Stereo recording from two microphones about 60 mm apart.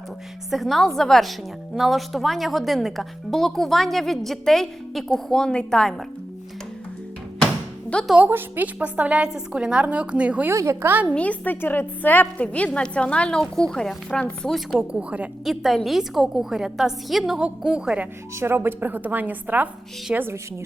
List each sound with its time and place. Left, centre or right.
0.5 s speech: centre
7.9 s a woman's voice: left
8.3 s a woman's voice: right
10.5 s a woman's voice: right
11.1 s a woman's voice: left
11.6 s a woman's voice: left; by 14.8 s centre
14.8 s a woman's voice: right
15.4 s a woman's voice: centre
18.3 s a woman's voice: right
20.1 s a woman's voice: centre